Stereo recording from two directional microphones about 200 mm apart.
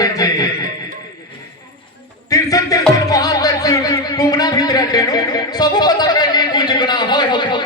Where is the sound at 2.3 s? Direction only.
20° left (ahead or behind).